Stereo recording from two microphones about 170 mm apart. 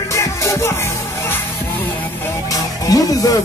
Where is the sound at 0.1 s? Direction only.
15° left (ahead or behind).